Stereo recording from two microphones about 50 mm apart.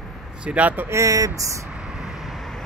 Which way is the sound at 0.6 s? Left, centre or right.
Right.